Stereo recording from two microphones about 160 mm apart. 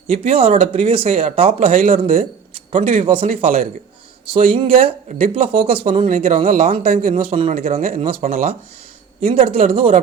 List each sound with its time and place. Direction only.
0.1 s speech: 35° right (ahead or behind)
6.1 s speech: 50° right (ahead or behind)
6.9 s speech: 60° right (ahead or behind)
7.2 s speech: 35° right (ahead or behind)
8.0 s speech: 60° right (ahead or behind)
9.3 s speech: 40° right (ahead or behind)